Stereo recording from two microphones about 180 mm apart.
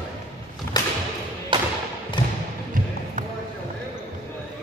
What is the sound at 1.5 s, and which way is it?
Thump, 30° right (ahead or behind).